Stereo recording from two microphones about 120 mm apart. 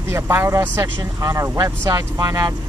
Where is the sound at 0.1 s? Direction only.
20° right (ahead or behind).